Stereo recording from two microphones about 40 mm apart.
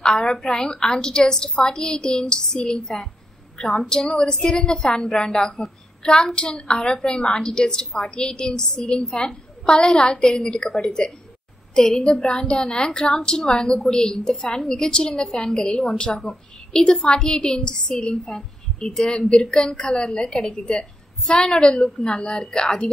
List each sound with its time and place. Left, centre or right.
0.0 s a woman's voice: centre
12.0 s a woman's voice: left
18.3 s a woman's voice: centre